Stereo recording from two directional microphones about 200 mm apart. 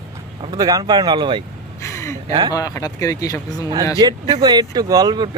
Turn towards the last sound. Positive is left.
turn(degrees=-20)  # may be behind; listen again after turning